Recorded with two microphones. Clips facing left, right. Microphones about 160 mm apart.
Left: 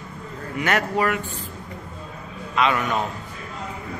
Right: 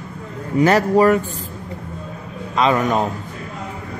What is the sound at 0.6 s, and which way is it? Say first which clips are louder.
Speech: right 9 dB; 35° right (ahead or behind).